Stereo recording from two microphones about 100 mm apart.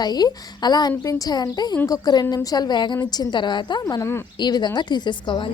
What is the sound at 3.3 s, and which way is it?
Speech, 50° left (ahead or behind).